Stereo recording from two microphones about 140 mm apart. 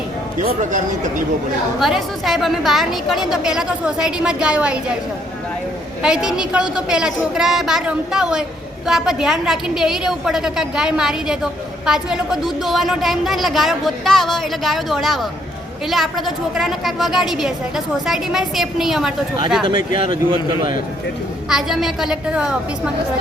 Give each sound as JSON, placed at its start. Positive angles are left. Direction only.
{"t": 0.3, "sound": "speech", "side_deg": -65}
{"t": 1.8, "sound": "a woman's voice", "side_deg": 0}
{"t": 6.0, "sound": "a woman's voice", "side_deg": -5}
{"t": 19.6, "sound": "speech", "side_deg": -35}
{"t": 21.5, "sound": "a woman's voice", "side_deg": 0}